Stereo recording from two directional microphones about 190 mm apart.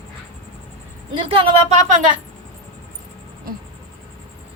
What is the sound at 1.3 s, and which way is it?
Speech, 30° right (ahead or behind).